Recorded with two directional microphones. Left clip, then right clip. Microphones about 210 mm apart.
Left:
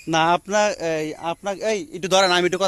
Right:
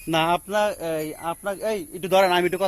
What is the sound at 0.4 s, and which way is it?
A man's voice, 50° left (ahead or behind).